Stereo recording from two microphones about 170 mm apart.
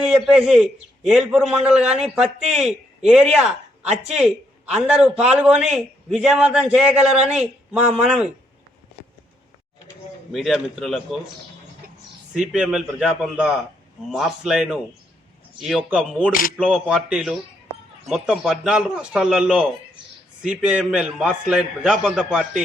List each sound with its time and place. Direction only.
0.0 s a man's voice: 5° right (ahead or behind)
10.3 s a man's voice: centre (ahead or behind)
11.8 s a sound: 60° right (ahead or behind)
12.3 s a man's voice: 5° right (ahead or behind)
16.3 s speech: 55° left (ahead or behind)
16.6 s a man's voice: centre (ahead or behind)